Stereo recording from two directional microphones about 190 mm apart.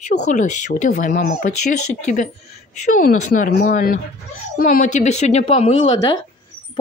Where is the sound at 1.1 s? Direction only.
50° left (ahead or behind).